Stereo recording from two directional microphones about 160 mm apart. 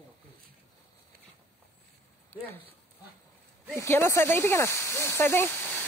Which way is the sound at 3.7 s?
15° left (ahead or behind).